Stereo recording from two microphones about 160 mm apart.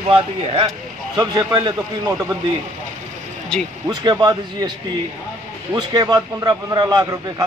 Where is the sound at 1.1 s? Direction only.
25° right (ahead or behind).